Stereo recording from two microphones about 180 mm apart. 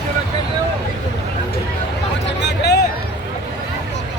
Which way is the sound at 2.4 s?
70° left (ahead or behind).